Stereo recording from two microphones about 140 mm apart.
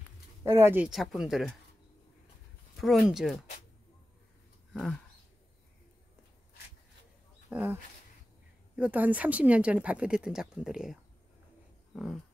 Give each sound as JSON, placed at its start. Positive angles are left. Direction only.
{"t": 0.4, "sound": "speech", "side_deg": -15}
{"t": 0.8, "sound": "speech", "side_deg": -5}
{"t": 2.8, "sound": "speech", "side_deg": 0}
{"t": 4.7, "sound": "speech", "side_deg": 5}
{"t": 7.4, "sound": "speech", "side_deg": -15}
{"t": 11.9, "sound": "dog", "side_deg": 0}